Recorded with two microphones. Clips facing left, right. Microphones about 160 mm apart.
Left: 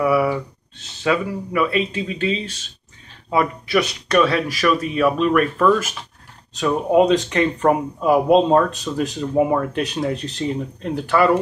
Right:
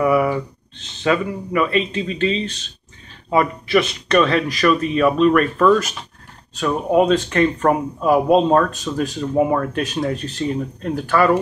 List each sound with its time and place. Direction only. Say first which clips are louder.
0.0 s speech: right 1 dB; 5° left (ahead or behind)
6.9 s speech: even; 20° left (ahead or behind)